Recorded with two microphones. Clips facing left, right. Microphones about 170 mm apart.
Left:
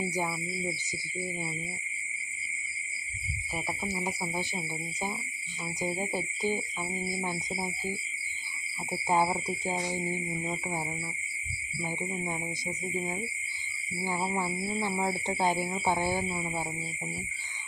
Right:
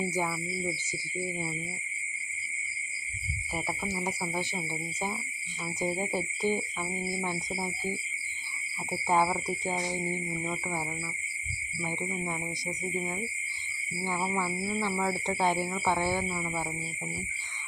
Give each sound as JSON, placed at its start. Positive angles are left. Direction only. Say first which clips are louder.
{"t": 4.2, "sound": "speech", "louder": "right 1 dB", "side_deg": 15}
{"t": 5.8, "sound": "cricket", "louder": "right 2 dB", "side_deg": 0}
{"t": 7.2, "sound": "speech", "louder": "right 1 dB", "side_deg": 10}
{"t": 9.0, "sound": "speech", "louder": "even", "side_deg": 20}
{"t": 14.1, "sound": "speech", "louder": "even", "side_deg": 25}